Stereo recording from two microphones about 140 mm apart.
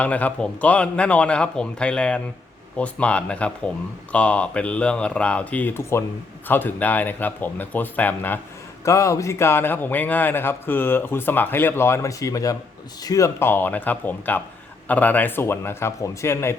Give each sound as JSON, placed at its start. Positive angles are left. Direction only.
{"t": 0.0, "sound": "a man's voice", "side_deg": 10}